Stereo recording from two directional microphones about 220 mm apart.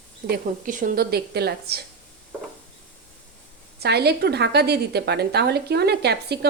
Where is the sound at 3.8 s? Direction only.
45° right (ahead or behind).